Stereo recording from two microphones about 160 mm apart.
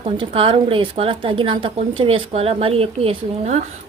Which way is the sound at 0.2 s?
35° right (ahead or behind).